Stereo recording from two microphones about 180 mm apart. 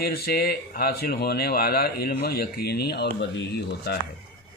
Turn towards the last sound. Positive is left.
turn(degrees=70)  # may be behind; listen again after turning